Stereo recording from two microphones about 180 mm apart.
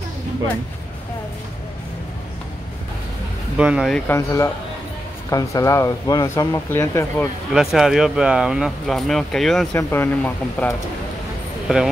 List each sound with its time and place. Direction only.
3.5 s speech: 5° right (ahead or behind)
4.1 s speech: 15° left (ahead or behind)
7.5 s speech: centre (ahead or behind)
9.8 s speech: 10° left (ahead or behind)